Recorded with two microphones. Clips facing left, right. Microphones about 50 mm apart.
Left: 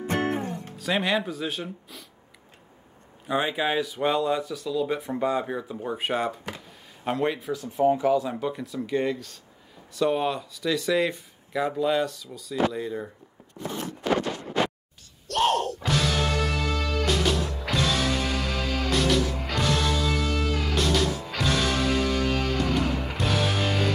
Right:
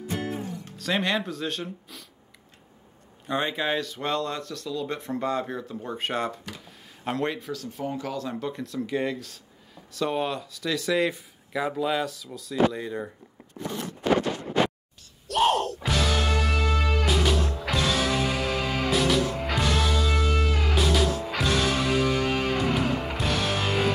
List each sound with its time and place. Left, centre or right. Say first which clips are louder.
0.0 s music: left 5 dB; left
0.7 s speech: left 1 dB; centre
3.3 s speech: left 1 dB; centre
14.0 s a sound: right 2 dB; centre
15.2 s music: right 1 dB; centre